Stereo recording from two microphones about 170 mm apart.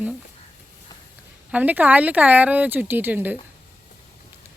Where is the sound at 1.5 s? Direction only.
10° right (ahead or behind).